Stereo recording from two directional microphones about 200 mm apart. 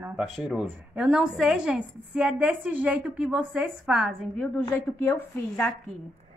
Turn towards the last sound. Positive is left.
turn(degrees=10)  # may be behind; listen again after turning